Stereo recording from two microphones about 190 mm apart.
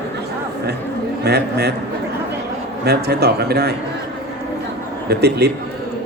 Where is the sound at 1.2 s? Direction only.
60° right (ahead or behind).